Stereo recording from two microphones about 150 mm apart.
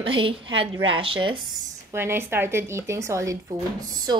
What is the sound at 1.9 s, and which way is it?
A woman's voice, 15° right (ahead or behind).